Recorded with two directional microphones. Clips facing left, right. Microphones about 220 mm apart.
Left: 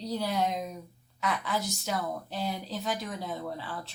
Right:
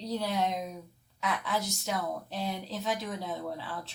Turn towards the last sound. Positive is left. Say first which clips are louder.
# even
turn(degrees=0)  # may be behind; listen again after turning